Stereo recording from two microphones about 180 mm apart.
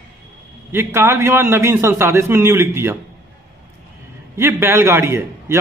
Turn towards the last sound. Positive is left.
turn(degrees=-15)  # may be behind; listen again after turning